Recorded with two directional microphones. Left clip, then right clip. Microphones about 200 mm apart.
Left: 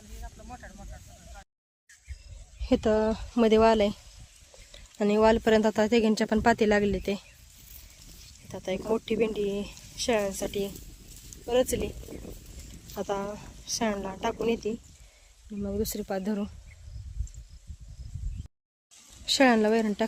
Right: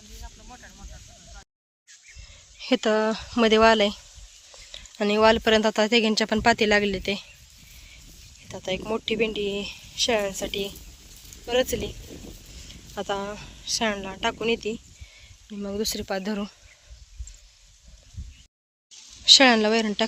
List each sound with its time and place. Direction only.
2.6 s speech: centre (ahead or behind)
8.4 s speech: centre (ahead or behind)
11.4 s speech: 20° left (ahead or behind)
12.9 s speech: centre (ahead or behind)
19.2 s speech: centre (ahead or behind)